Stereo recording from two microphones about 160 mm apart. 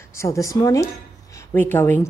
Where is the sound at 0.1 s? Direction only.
20° left (ahead or behind).